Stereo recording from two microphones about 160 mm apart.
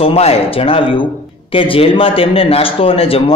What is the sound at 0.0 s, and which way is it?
A man's voice, 40° left (ahead or behind).